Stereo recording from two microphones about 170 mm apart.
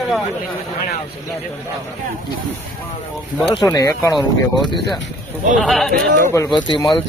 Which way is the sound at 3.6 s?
20° left (ahead or behind).